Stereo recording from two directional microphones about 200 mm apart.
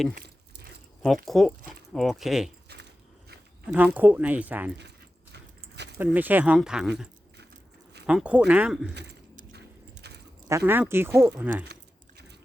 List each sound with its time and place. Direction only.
0.1 s a sound: 50° right (ahead or behind)
1.0 s speech: centre (ahead or behind)
3.7 s speech: 5° right (ahead or behind)
5.3 s a sound: 55° right (ahead or behind)
6.0 s speech: 10° right (ahead or behind)
8.0 s speech: 5° right (ahead or behind)
10.7 s speech: 10° right (ahead or behind)
11.7 s keys jangling: 55° right (ahead or behind)